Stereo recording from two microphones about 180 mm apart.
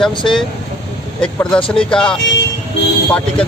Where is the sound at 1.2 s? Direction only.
5° left (ahead or behind).